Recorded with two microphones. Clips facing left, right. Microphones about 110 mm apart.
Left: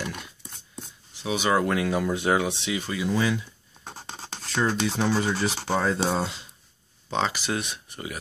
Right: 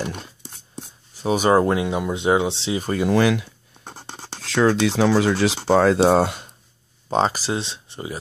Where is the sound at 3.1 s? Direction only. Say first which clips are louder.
Right 7 dB; 70° right (ahead or behind).